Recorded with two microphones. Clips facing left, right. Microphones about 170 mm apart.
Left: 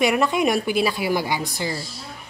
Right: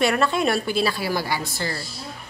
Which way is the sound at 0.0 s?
15° left (ahead or behind).